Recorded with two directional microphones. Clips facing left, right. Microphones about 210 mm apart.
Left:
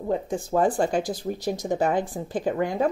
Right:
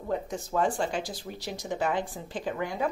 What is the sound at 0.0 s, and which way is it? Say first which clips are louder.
Speech: left 5 dB; 30° left (ahead or behind).